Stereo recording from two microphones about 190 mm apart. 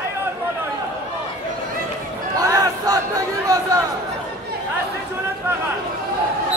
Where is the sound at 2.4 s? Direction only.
15° right (ahead or behind).